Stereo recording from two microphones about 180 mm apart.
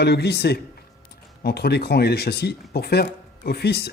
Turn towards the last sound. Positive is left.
turn(degrees=65)  # may be behind; listen again after turning